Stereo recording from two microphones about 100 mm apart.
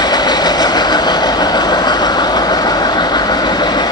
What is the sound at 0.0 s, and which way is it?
Train, 45° left (ahead or behind).